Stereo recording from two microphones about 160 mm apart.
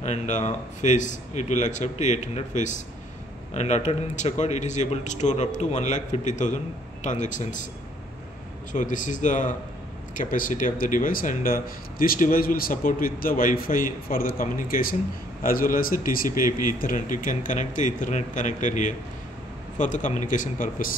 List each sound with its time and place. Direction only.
0.0 s a man's voice: 45° left (ahead or behind)
8.7 s a man's voice: 50° left (ahead or behind)